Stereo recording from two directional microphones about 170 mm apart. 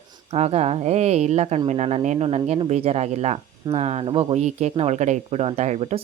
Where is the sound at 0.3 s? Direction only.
40° right (ahead or behind).